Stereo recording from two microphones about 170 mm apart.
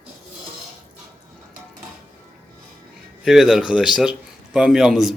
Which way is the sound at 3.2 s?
Centre (ahead or behind).